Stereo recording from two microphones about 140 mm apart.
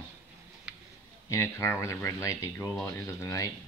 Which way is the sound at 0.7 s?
5° right (ahead or behind).